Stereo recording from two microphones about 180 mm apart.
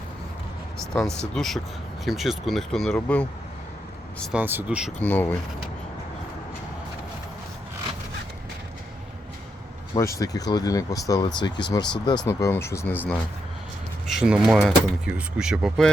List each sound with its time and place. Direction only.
0.9 s speech: centre (ahead or behind)
4.2 s speech: 5° right (ahead or behind)
4.9 s speech: 10° left (ahead or behind)
9.9 s speech: 20° left (ahead or behind)
14.1 s speech: 5° right (ahead or behind)